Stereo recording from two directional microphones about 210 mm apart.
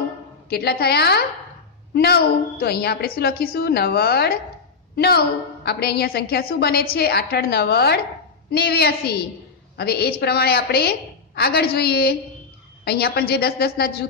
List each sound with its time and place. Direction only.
0.5 s a woman's voice: 50° left (ahead or behind)